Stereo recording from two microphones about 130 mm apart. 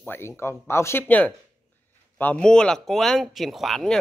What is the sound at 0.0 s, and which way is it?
A man's voice, 15° left (ahead or behind).